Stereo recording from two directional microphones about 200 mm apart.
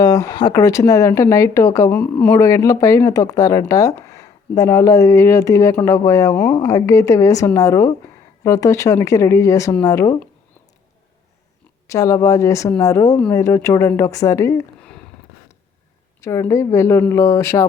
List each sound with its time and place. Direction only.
0.0 s speech: 15° left (ahead or behind)
11.9 s speech: 15° left (ahead or behind)
16.2 s speech: 15° left (ahead or behind)